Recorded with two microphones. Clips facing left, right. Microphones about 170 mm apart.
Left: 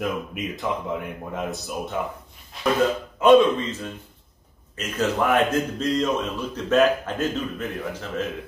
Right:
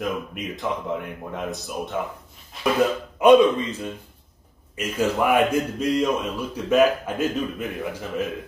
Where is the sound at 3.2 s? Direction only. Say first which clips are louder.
Right 1 dB; 15° right (ahead or behind).